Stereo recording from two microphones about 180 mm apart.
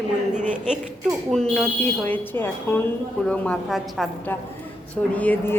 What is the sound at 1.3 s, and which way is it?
A woman's voice, 5° left (ahead or behind).